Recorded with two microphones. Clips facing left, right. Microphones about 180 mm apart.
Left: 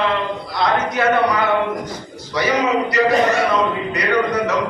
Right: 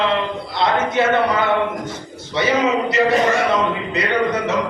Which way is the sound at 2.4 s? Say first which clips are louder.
Even; 25° right (ahead or behind).